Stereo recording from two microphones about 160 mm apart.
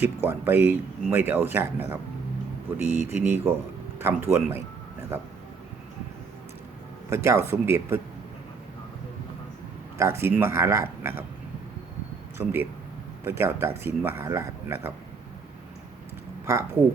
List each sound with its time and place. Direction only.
0.0 s speech: 15° right (ahead or behind)
7.1 s speech: 15° right (ahead or behind)
10.0 s speech: 15° right (ahead or behind)
12.4 s speech: 15° right (ahead or behind)
16.5 s speech: 15° right (ahead or behind)